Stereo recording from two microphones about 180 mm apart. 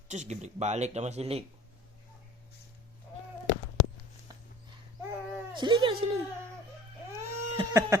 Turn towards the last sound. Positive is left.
turn(degrees=-15)  # may be behind; listen again after turning